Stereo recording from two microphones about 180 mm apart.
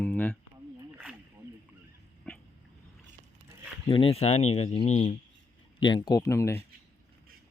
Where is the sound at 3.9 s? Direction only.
30° left (ahead or behind).